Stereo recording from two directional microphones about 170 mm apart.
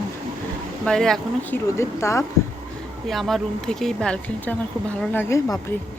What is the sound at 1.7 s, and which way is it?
Speech, 15° left (ahead or behind).